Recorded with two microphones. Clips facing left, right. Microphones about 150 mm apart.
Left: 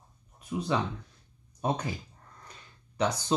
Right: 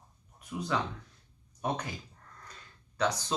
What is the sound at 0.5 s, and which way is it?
Speech, 25° left (ahead or behind).